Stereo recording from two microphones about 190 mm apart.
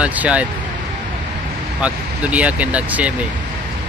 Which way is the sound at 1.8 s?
5° right (ahead or behind).